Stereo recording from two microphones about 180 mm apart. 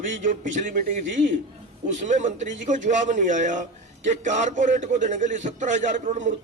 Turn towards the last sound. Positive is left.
turn(degrees=-45)  # may be behind; listen again after turning